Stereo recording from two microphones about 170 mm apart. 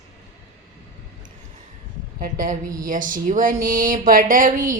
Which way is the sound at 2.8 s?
50° right (ahead or behind).